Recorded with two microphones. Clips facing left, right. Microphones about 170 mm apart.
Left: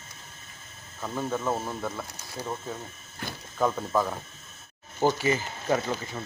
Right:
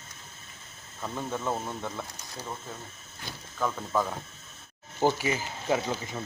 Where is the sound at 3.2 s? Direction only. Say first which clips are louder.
Left 5 dB; 60° left (ahead or behind).